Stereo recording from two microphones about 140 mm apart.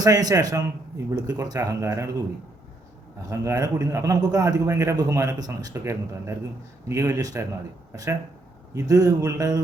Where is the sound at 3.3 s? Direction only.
25° right (ahead or behind).